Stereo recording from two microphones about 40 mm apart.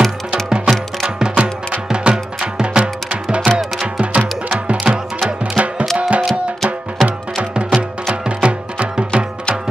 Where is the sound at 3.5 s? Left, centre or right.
Right.